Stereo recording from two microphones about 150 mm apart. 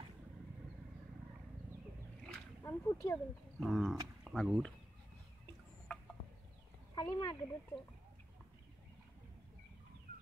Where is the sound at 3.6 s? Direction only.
Centre (ahead or behind).